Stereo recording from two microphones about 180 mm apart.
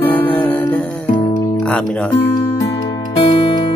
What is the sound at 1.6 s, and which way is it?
Speech, 5° left (ahead or behind).